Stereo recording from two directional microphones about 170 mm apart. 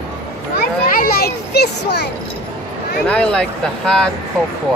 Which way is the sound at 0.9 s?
60° left (ahead or behind).